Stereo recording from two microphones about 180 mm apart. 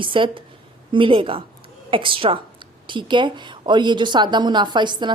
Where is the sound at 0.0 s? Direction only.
30° right (ahead or behind).